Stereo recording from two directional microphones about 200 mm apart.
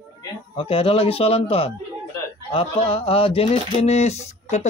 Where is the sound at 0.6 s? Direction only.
25° left (ahead or behind).